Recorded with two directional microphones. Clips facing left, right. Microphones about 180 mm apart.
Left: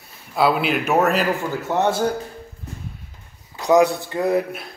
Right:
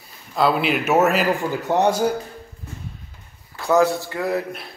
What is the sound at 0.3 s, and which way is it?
Speech, 5° left (ahead or behind).